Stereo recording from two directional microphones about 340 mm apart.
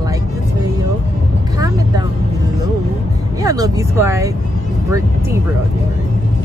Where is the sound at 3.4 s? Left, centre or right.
Centre.